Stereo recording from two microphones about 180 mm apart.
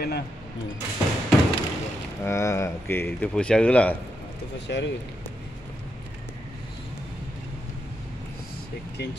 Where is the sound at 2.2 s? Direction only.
15° left (ahead or behind).